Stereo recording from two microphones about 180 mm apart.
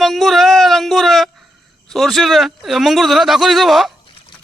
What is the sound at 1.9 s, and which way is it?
A man's voice, centre (ahead or behind).